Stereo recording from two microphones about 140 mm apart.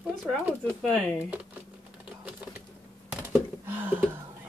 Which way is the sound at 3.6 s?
15° right (ahead or behind).